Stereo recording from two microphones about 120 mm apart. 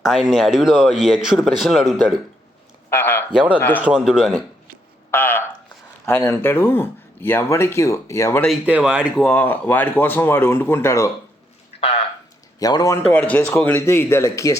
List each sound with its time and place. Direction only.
0.0 s speech: centre (ahead or behind)
2.9 s a man's voice: 15° left (ahead or behind)
3.3 s speech: 10° right (ahead or behind)
5.1 s speech: 15° left (ahead or behind)
8.6 s speech: 10° right (ahead or behind)
9.2 s speech: 15° left (ahead or behind)
11.8 s a sound: 55° left (ahead or behind)
12.5 s speech: 30° left (ahead or behind)
13.0 s speech: 10° left (ahead or behind); by 14.5 s 25° left (ahead or behind)